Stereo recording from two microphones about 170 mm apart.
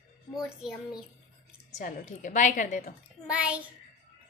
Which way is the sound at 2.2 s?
45° left (ahead or behind).